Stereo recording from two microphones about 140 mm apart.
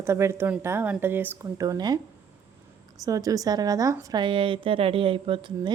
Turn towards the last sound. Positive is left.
turn(degrees=-35)  # may be behind; listen again after turning